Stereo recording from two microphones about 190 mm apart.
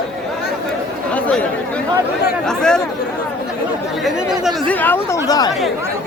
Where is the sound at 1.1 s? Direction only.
5° left (ahead or behind).